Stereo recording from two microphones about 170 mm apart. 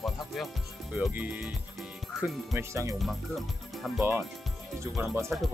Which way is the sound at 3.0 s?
Centre (ahead or behind).